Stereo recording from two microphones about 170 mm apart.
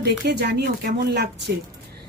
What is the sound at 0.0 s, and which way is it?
A woman's voice, 75° right (ahead or behind).